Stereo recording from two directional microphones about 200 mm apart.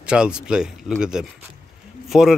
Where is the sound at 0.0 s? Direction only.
5° right (ahead or behind).